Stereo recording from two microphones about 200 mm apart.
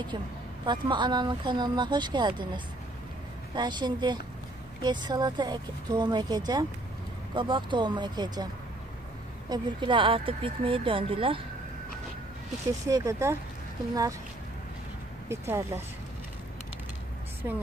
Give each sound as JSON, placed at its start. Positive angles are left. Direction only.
{"t": 0.7, "sound": "speech", "side_deg": -20}
{"t": 9.5, "sound": "speech", "side_deg": -25}
{"t": 12.8, "sound": "speech", "side_deg": -15}
{"t": 15.2, "sound": "speech", "side_deg": -10}
{"t": 17.4, "sound": "speech", "side_deg": -10}